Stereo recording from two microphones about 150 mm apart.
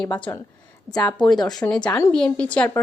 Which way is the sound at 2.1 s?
5° left (ahead or behind).